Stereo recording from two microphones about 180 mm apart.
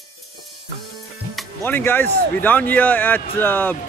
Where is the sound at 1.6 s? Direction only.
10° left (ahead or behind).